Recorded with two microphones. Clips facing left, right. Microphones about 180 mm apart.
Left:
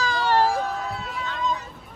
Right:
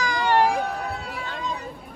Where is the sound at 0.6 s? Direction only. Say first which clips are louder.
Even; 60° right (ahead or behind).